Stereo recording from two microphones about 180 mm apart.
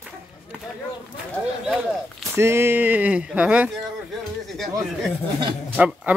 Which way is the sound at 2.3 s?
15° right (ahead or behind).